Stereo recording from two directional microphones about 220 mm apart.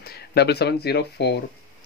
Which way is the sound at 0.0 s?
45° left (ahead or behind).